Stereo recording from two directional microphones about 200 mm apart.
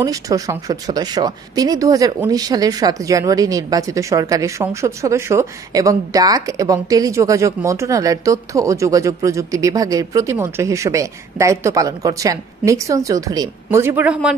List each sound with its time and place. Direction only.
0.0 s a woman's voice: 15° right (ahead or behind)